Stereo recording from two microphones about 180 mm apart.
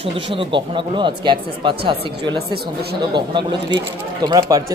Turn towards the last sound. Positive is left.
turn(degrees=-20)  # may be behind; listen again after turning